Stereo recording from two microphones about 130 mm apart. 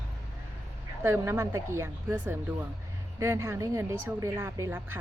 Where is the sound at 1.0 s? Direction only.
20° right (ahead or behind).